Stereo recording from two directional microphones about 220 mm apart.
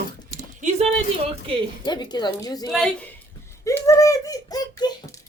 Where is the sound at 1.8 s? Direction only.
20° left (ahead or behind).